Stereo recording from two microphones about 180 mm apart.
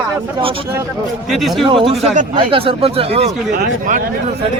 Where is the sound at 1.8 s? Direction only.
35° right (ahead or behind).